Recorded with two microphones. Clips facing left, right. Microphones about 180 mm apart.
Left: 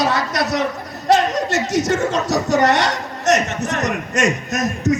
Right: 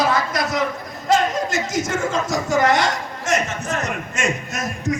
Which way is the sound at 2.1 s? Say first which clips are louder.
Left 3 dB; 75° left (ahead or behind).